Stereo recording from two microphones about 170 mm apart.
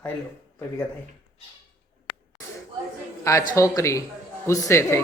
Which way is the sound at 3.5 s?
20° left (ahead or behind).